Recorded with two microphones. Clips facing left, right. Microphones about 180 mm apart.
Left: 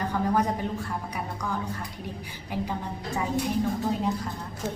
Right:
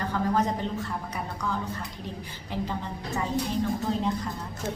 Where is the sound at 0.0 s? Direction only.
15° left (ahead or behind).